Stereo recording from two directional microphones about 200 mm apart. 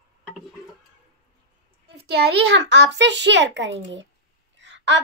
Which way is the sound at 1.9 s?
55° right (ahead or behind).